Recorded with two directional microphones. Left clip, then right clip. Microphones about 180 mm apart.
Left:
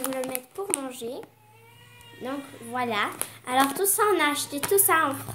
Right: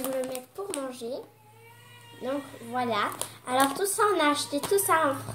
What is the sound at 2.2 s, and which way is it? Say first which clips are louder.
A woman's voice: right 2 dB; 50° left (ahead or behind).